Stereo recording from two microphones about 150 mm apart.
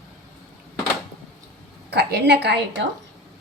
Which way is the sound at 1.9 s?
90° right.